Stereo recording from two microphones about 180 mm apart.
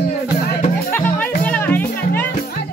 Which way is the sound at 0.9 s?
10° left (ahead or behind).